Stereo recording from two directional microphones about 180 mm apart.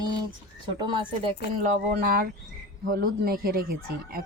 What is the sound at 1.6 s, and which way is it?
Speech, 50° right (ahead or behind).